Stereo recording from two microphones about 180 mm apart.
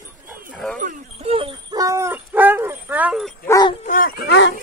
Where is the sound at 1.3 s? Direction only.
25° right (ahead or behind); by 3.3 s 5° right (ahead or behind).